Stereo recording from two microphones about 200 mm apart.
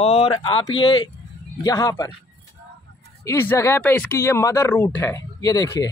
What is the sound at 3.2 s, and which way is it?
Speech, 10° left (ahead or behind).